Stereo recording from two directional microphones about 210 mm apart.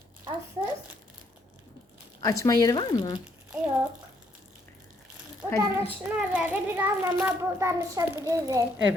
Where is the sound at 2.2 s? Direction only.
15° left (ahead or behind).